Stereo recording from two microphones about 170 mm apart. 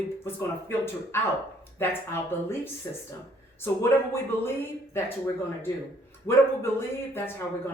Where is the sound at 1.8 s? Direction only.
15° left (ahead or behind).